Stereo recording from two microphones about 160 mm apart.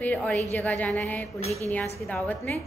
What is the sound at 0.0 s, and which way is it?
A woman's voice, 10° left (ahead or behind).